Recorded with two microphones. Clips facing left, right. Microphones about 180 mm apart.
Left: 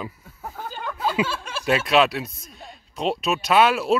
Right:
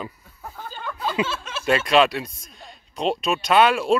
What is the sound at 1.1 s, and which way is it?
Speech, 10° left (ahead or behind).